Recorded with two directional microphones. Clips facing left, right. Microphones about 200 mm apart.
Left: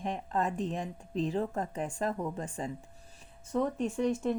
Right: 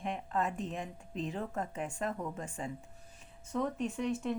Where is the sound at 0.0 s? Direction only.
35° left (ahead or behind).